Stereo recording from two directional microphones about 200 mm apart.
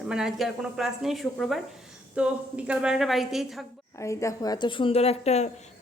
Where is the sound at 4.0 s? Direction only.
15° left (ahead or behind); by 5.5 s 35° left (ahead or behind).